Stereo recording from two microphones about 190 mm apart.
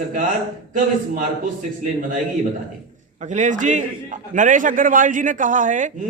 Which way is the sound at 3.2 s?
40° right (ahead or behind).